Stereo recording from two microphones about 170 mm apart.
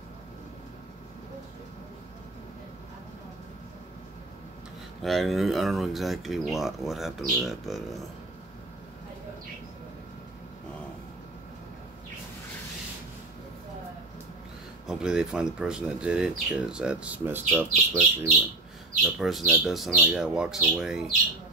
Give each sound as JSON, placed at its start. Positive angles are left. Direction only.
{"t": 5.0, "sound": "speech", "side_deg": 0}
{"t": 14.9, "sound": "speech", "side_deg": -5}
{"t": 19.0, "sound": "speech", "side_deg": 0}